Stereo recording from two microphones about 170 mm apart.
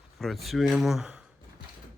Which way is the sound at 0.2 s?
Centre (ahead or behind).